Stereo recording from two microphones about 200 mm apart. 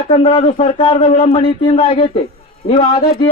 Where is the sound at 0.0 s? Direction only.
25° left (ahead or behind).